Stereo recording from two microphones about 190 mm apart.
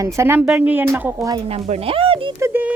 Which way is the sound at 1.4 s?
35° right (ahead or behind).